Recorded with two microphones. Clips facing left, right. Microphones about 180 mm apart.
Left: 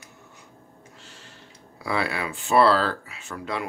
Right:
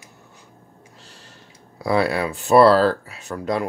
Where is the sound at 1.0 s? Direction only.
35° right (ahead or behind).